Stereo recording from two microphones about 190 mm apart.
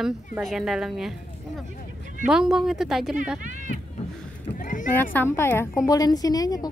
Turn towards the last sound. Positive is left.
turn(degrees=20)  # may be behind; listen again after turning